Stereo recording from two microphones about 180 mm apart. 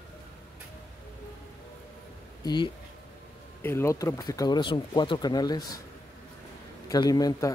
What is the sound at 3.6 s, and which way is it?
Speech, 15° left (ahead or behind).